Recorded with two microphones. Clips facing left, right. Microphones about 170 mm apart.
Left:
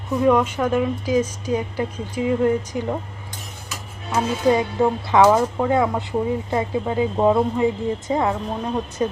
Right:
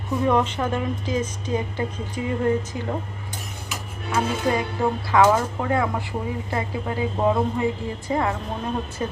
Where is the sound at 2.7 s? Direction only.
20° left (ahead or behind).